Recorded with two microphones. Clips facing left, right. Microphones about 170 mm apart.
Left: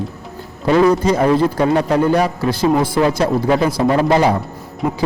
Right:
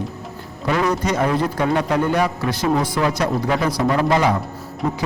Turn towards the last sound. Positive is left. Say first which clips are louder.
# left 3 dB
turn(degrees=10)  # may be behind; listen again after turning